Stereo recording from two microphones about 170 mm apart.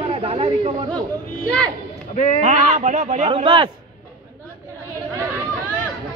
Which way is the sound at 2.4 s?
45° right (ahead or behind).